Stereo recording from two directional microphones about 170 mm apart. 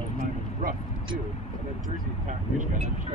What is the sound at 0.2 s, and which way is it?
Vehicle, 55° right (ahead or behind).